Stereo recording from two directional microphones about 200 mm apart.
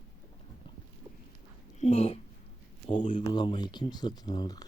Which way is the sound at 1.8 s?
30° left (ahead or behind).